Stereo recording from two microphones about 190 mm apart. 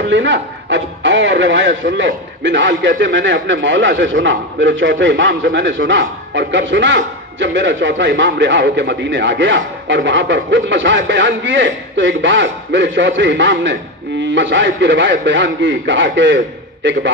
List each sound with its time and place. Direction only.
0.0 s a man's voice: 70° right (ahead or behind)